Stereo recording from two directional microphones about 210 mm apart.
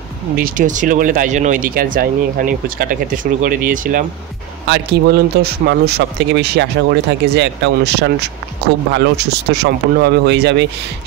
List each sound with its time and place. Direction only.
0.4 s speech: 40° right (ahead or behind)
4.6 s speech: 55° right (ahead or behind)